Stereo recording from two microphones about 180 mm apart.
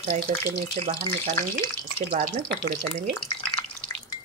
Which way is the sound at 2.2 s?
50° right (ahead or behind).